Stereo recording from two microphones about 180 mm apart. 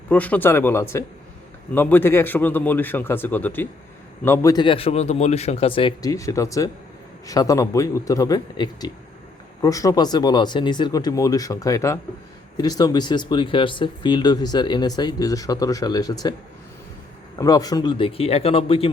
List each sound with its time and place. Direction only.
0.1 s a man's voice: 10° left (ahead or behind)
17.3 s speech: 20° left (ahead or behind)